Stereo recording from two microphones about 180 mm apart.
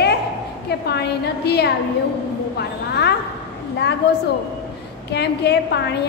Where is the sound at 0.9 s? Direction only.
65° left (ahead or behind).